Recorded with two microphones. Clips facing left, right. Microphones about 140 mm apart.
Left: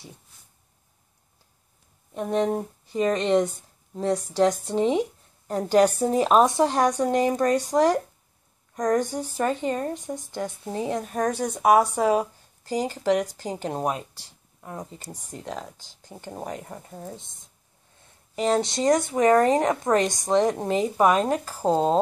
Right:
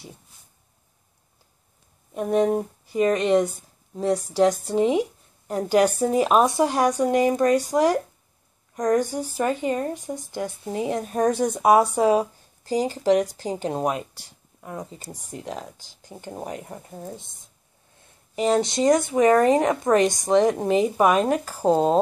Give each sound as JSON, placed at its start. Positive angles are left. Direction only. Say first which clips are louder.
{"t": 2.1, "sound": "speech", "louder": "right 3 dB", "side_deg": -10}
{"t": 12.0, "sound": "a sound", "louder": "right 3 dB", "side_deg": -20}
{"t": 12.7, "sound": "speech", "louder": "right 3 dB", "side_deg": -15}
{"t": 18.3, "sound": "speech", "louder": "right 2 dB", "side_deg": -15}